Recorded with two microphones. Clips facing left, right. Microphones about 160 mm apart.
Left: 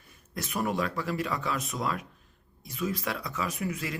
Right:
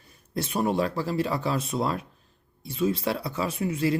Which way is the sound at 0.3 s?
30° right (ahead or behind).